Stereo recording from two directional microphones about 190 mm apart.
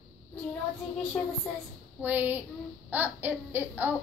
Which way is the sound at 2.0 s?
10° right (ahead or behind).